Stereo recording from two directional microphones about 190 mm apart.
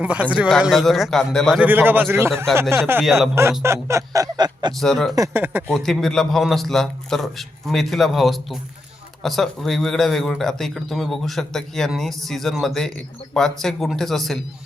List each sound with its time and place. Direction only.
0.0 s speech: 5° right (ahead or behind)
1.6 s a man's voice: 10° right (ahead or behind)
2.3 s speech: centre (ahead or behind)
2.6 s a man's voice: 15° right (ahead or behind)
3.6 s music: 15° right (ahead or behind)
4.8 s speech: centre (ahead or behind)
5.1 s a man's voice: 15° right (ahead or behind)
5.7 s speech: centre (ahead or behind)